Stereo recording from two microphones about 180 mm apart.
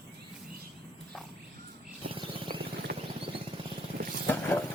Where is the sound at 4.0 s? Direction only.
55° right (ahead or behind).